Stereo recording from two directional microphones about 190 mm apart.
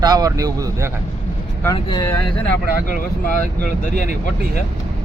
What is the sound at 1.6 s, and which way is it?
Speech, 20° left (ahead or behind).